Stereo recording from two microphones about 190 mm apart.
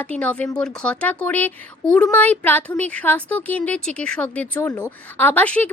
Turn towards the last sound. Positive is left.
turn(degrees=5)  # may be behind; listen again after turning